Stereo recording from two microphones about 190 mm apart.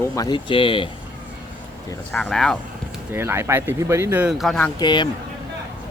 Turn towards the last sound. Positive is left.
turn(degrees=25)  # may be behind; listen again after turning